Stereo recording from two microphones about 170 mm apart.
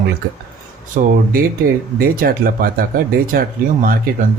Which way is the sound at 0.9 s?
55° right (ahead or behind).